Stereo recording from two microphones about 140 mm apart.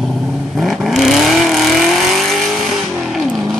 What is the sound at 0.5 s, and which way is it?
Vehicle, centre (ahead or behind).